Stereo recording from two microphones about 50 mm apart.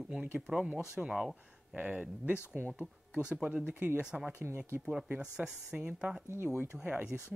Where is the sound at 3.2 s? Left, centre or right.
Centre.